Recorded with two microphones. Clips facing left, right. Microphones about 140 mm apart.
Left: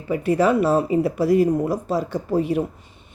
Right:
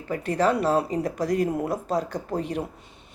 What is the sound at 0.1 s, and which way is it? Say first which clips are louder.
A woman's voice: left 5 dB; 10° left (ahead or behind).